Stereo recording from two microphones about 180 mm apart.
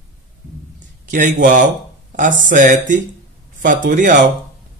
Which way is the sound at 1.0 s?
45° right (ahead or behind).